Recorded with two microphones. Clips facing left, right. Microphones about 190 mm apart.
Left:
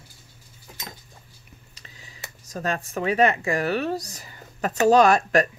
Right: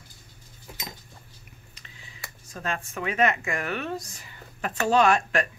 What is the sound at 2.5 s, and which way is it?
Speech, 40° left (ahead or behind).